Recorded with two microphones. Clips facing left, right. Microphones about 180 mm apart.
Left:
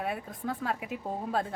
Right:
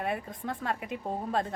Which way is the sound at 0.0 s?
Centre (ahead or behind).